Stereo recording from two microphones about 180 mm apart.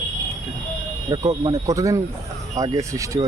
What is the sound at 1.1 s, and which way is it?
Speech, 25° right (ahead or behind).